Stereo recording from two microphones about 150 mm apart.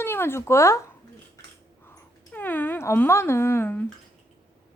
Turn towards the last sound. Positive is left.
turn(degrees=15)  # may be behind; listen again after turning